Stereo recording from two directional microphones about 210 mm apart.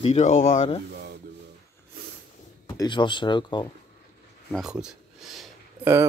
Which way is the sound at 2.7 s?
20° left (ahead or behind).